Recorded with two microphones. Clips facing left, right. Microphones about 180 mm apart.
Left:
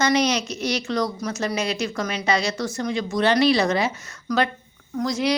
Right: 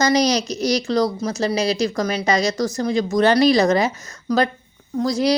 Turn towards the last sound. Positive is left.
turn(degrees=-35)  # may be behind; listen again after turning